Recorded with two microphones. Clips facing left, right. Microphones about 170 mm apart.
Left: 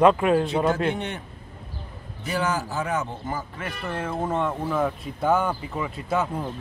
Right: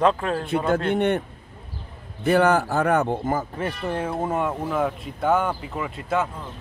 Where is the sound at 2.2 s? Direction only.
60° right (ahead or behind).